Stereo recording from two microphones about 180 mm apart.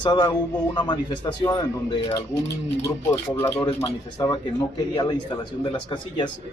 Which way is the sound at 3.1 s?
15° left (ahead or behind).